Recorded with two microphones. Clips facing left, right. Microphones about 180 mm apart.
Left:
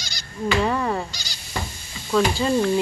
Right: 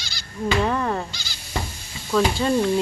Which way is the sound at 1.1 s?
40° left (ahead or behind).